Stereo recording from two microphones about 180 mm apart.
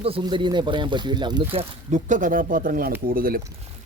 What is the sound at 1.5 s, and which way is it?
Speech, 45° right (ahead or behind).